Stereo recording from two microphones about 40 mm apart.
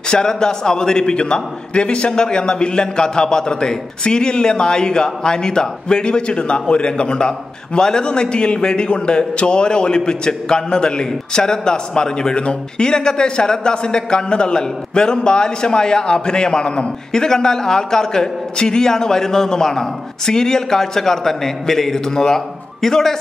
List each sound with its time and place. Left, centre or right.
0.1 s a man's voice: centre